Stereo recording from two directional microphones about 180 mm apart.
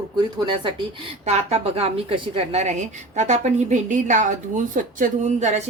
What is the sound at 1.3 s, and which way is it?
A woman's voice, 35° right (ahead or behind).